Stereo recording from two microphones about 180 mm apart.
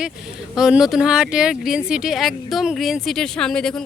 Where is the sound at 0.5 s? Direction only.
5° right (ahead or behind).